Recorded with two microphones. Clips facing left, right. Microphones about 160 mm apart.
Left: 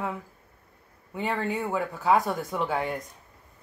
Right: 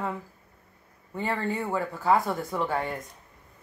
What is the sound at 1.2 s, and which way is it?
Speech, 15° left (ahead or behind).